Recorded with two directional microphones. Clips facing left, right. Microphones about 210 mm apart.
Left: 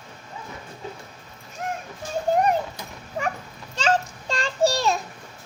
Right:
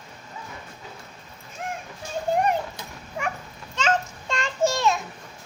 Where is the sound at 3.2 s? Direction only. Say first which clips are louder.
Left 2 dB; 35° left (ahead or behind).